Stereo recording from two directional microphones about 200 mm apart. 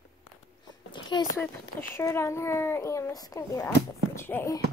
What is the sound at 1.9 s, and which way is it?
A child's voice, 15° left (ahead or behind).